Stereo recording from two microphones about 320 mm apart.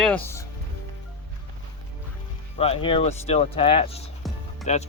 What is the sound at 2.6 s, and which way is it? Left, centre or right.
Speech, centre.